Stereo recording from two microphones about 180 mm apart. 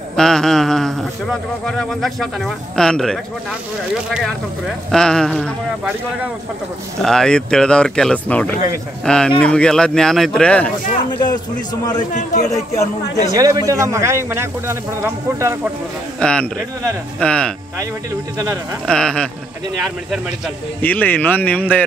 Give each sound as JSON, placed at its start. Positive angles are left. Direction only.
{"t": 0.1, "sound": "sheep", "side_deg": 5}
{"t": 1.7, "sound": "speech", "side_deg": 0}
{"t": 7.0, "sound": "speech", "side_deg": 0}
{"t": 12.1, "sound": "a man's voice", "side_deg": 45}
{"t": 12.7, "sound": "a man's voice", "side_deg": 15}
{"t": 13.3, "sound": "a man's voice", "side_deg": -20}
{"t": 16.2, "sound": "speech", "side_deg": 5}
{"t": 18.9, "sound": "speech", "side_deg": 5}
{"t": 20.8, "sound": "a man's voice", "side_deg": 10}